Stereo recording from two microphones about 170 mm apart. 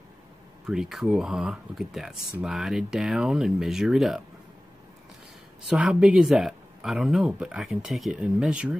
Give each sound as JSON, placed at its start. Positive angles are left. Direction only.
{"t": 0.7, "sound": "speech", "side_deg": -5}
{"t": 5.7, "sound": "speech", "side_deg": -5}